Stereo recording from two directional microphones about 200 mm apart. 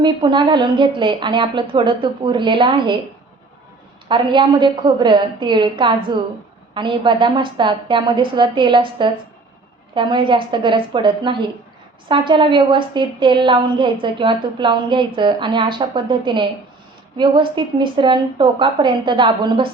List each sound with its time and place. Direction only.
0.0 s a woman's voice: 25° right (ahead or behind)
4.1 s a woman's voice: 25° right (ahead or behind)